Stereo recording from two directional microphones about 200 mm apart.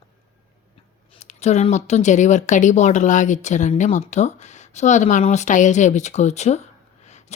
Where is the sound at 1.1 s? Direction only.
35° left (ahead or behind).